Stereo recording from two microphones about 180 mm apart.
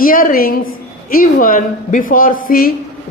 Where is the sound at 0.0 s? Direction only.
50° left (ahead or behind).